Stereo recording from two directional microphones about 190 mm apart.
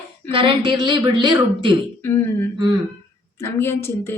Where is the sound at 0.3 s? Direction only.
25° right (ahead or behind).